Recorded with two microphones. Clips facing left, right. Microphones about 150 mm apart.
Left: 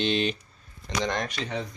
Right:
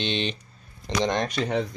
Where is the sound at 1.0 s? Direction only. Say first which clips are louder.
Right 4 dB; 25° right (ahead or behind).